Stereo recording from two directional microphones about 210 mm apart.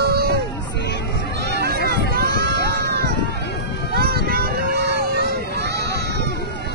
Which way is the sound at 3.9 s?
45° right (ahead or behind).